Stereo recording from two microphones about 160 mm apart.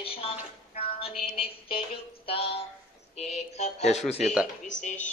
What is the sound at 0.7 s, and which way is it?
Music, 40° left (ahead or behind).